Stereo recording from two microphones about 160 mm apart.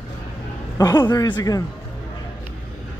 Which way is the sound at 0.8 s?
25° left (ahead or behind).